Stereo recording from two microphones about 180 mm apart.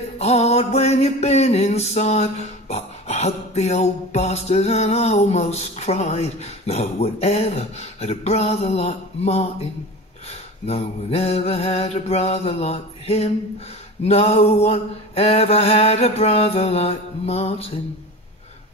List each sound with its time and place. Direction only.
0.2 s music: 35° left (ahead or behind)
10.7 s music: 35° left (ahead or behind)